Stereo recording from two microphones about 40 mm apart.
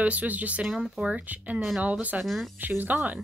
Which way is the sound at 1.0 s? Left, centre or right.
Right.